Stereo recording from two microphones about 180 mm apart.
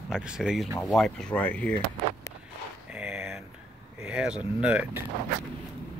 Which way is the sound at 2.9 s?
5° right (ahead or behind).